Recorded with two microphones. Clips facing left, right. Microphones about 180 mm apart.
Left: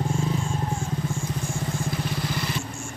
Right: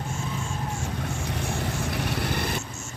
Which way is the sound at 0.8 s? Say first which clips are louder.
Left 2 dB; 70° right (ahead or behind).